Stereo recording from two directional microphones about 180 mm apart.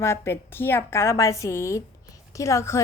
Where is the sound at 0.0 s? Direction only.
15° left (ahead or behind).